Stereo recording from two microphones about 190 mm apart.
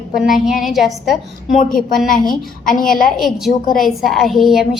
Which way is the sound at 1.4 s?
40° left (ahead or behind).